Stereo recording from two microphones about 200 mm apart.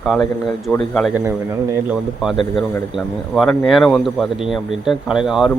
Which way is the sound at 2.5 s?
Centre (ahead or behind).